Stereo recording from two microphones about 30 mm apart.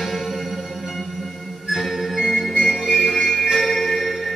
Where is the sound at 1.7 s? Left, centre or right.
Centre.